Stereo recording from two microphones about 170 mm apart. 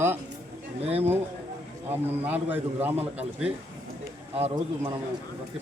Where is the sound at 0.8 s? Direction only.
35° right (ahead or behind).